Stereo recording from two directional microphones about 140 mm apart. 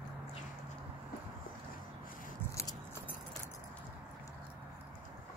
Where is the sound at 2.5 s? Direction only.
20° left (ahead or behind).